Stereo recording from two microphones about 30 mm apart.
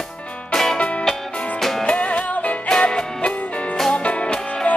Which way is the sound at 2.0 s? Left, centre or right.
Left.